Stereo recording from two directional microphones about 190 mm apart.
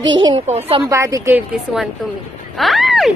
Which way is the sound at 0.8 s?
15° right (ahead or behind).